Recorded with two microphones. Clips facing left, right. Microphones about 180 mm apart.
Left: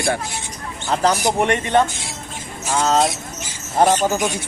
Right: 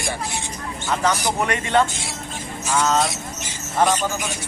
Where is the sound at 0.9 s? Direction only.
35° left (ahead or behind).